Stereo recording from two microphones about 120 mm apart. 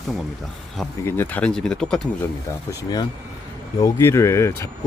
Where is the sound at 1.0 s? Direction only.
20° left (ahead or behind).